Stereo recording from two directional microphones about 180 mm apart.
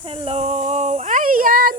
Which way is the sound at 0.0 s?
30° right (ahead or behind).